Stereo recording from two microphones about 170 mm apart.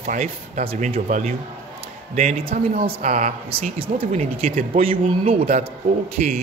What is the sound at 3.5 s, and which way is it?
Speech, 35° right (ahead or behind).